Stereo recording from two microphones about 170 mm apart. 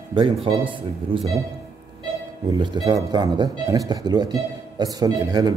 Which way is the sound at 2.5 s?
25° right (ahead or behind).